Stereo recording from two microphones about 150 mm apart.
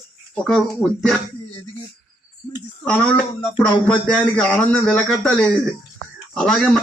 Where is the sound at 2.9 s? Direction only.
10° left (ahead or behind).